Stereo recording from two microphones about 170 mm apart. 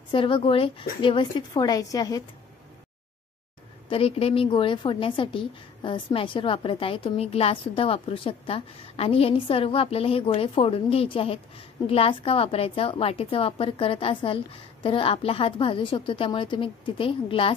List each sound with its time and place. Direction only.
0.1 s a woman's voice: 30° left (ahead or behind)
3.9 s a woman's voice: 35° left (ahead or behind)